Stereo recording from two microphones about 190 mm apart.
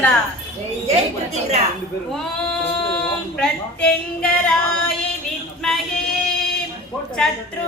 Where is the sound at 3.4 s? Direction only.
5° left (ahead or behind).